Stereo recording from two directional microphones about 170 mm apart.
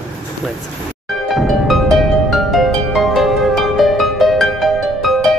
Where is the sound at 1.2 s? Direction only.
Centre (ahead or behind).